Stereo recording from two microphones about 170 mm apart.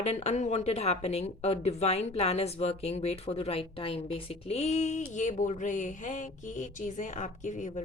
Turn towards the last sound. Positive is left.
turn(degrees=45)  # may be behind; listen again after turning